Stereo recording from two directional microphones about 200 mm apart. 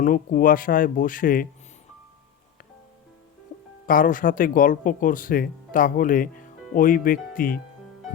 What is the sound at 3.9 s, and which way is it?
Speech, 45° left (ahead or behind).